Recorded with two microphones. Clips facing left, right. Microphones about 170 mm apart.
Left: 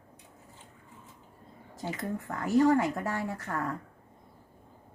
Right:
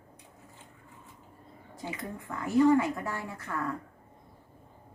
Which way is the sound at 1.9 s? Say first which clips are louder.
Left 4 dB; 40° left (ahead or behind).